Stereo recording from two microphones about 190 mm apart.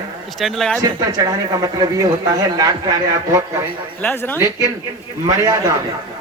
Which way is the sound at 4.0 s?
10° left (ahead or behind).